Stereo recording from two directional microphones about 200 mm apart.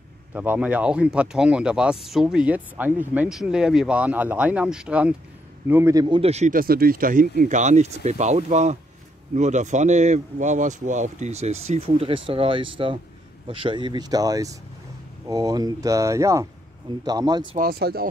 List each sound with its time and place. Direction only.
0.3 s speech: 10° right (ahead or behind)
17.6 s speech: 50° right (ahead or behind)